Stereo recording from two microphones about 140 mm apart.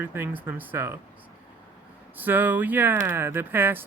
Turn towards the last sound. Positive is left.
turn(degrees=-15)  # may be behind; listen again after turning